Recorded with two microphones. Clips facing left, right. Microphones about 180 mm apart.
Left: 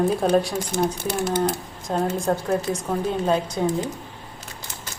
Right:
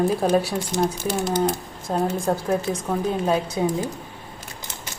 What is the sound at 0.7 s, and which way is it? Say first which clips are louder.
Speech: right 1 dB; 60° left (ahead or behind).